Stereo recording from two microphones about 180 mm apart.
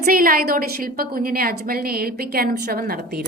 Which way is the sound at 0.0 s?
50° right (ahead or behind).